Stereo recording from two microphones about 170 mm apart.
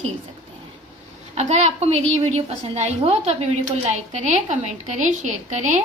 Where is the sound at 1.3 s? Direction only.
40° right (ahead or behind).